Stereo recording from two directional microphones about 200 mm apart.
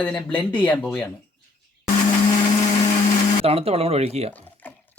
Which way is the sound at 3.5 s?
30° right (ahead or behind).